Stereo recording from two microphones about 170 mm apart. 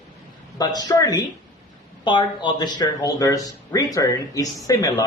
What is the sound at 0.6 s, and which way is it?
Speech, 20° left (ahead or behind).